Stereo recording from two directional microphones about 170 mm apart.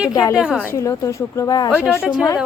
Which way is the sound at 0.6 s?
15° left (ahead or behind).